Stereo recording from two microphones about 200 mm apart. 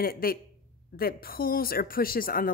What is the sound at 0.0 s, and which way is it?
Speech, 50° left (ahead or behind).